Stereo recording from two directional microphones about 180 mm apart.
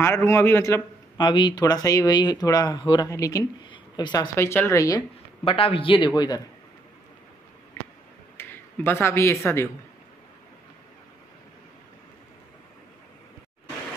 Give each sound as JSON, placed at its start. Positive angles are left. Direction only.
{"t": 0.0, "sound": "a man's voice", "side_deg": 15}
{"t": 5.4, "sound": "a man's voice", "side_deg": 30}
{"t": 8.4, "sound": "speech", "side_deg": 15}